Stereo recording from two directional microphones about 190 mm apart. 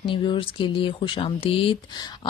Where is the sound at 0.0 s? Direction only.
25° left (ahead or behind).